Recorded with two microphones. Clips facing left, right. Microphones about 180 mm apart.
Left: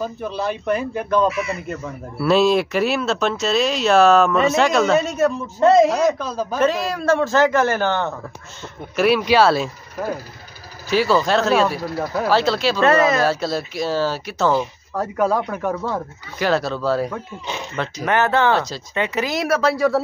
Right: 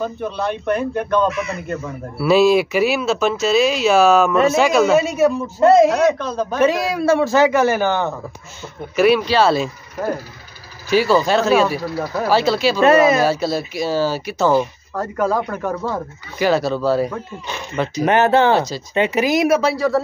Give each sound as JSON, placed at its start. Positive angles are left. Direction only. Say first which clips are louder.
{"t": 0.0, "sound": "speech", "louder": "right 2 dB", "side_deg": 5}
{"t": 6.6, "sound": "a man's voice", "louder": "right 3 dB", "side_deg": -10}
{"t": 18.0, "sound": "a man's voice", "louder": "right 4 dB", "side_deg": -20}